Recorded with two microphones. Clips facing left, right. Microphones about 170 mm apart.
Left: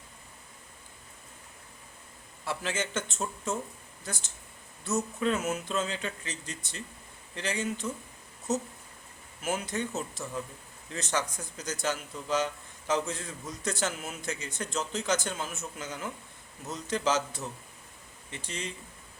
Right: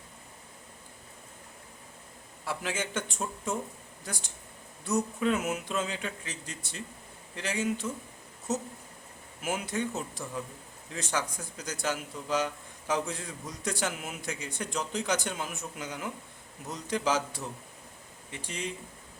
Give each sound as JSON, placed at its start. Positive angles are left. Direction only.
{"t": 2.5, "sound": "a man's voice", "side_deg": -10}
{"t": 9.4, "sound": "a man's voice", "side_deg": -10}